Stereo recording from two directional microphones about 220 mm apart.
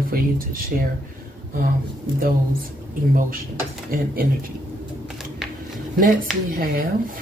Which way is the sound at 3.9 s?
40° right (ahead or behind).